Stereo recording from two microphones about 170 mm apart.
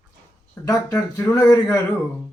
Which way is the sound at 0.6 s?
20° left (ahead or behind).